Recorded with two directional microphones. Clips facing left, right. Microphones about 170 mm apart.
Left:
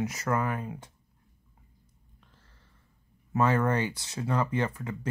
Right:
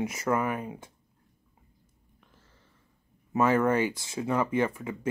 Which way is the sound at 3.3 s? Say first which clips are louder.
Right 2 dB; 15° right (ahead or behind).